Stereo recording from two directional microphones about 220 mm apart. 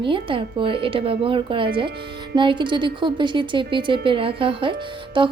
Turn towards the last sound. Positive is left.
turn(degrees=-20)  # may be behind; listen again after turning